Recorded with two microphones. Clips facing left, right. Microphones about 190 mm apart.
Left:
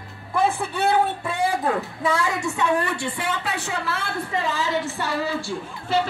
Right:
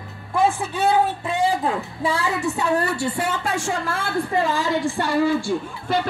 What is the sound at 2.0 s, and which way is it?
A woman's voice, 35° right (ahead or behind).